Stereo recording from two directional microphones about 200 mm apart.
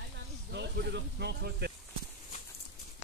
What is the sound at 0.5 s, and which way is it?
Speech, 60° right (ahead or behind).